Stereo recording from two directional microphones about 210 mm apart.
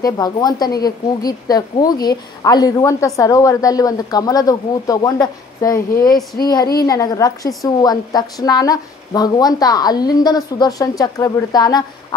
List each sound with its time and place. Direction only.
0.0 s a woman's voice: 20° left (ahead or behind)